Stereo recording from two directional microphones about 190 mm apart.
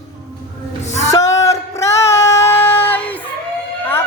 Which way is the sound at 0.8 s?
35° left (ahead or behind).